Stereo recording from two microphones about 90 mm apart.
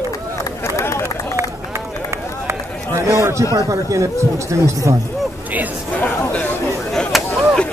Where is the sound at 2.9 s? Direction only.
35° right (ahead or behind).